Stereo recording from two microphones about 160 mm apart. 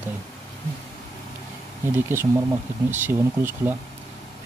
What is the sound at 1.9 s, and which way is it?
Speech, 15° right (ahead or behind).